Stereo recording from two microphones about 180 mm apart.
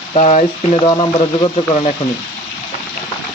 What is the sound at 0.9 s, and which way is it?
Speech, 25° left (ahead or behind).